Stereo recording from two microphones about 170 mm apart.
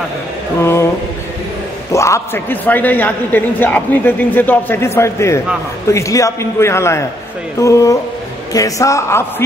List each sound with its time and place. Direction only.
0.6 s speech: 15° left (ahead or behind)
1.9 s a man's voice: 15° left (ahead or behind)